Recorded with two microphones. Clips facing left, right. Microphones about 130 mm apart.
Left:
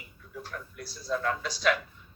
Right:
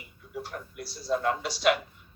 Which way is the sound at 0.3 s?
30° right (ahead or behind).